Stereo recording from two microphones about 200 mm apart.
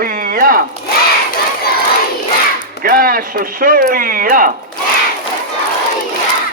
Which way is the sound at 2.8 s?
45° right (ahead or behind).